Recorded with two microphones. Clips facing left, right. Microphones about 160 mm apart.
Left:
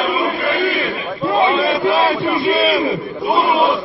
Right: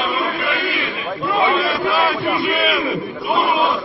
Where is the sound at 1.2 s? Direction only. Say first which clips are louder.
Left 3 dB; 35° left (ahead or behind).